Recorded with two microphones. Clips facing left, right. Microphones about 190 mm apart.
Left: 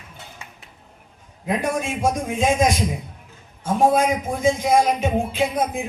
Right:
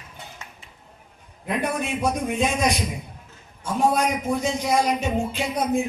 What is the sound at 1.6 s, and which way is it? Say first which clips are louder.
Speech: even; 45° left (ahead or behind).